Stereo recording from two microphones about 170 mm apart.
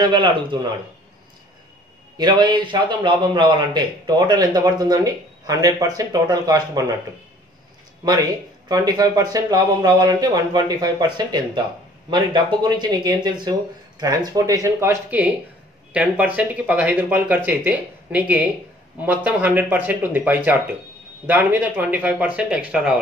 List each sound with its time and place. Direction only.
0.0 s a man's voice: 25° right (ahead or behind)
2.1 s a man's voice: 25° right (ahead or behind)
8.0 s a man's voice: 20° right (ahead or behind); by 22.9 s 5° right (ahead or behind)